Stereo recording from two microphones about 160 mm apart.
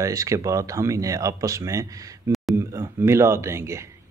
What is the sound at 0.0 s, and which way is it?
Speech, 20° right (ahead or behind).